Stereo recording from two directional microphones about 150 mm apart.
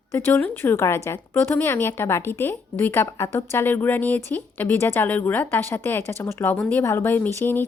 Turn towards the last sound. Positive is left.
turn(degrees=15)  # may be behind; listen again after turning